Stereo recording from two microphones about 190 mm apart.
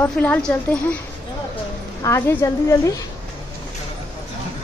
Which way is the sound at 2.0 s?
15° left (ahead or behind).